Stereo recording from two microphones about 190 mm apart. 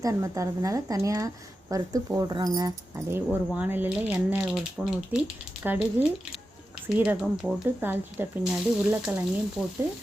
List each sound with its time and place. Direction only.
0.0 s speech: 15° right (ahead or behind)